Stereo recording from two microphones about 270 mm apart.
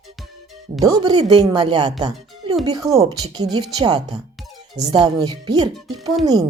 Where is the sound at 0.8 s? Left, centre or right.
Centre.